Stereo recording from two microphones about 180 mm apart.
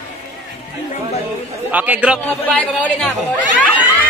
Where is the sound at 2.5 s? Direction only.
10° left (ahead or behind).